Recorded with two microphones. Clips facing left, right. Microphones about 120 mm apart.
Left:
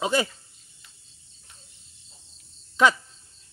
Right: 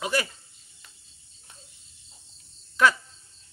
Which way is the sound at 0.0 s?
25° left (ahead or behind).